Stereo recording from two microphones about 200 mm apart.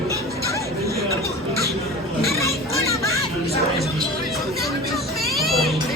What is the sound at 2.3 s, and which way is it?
Children playing, 15° left (ahead or behind).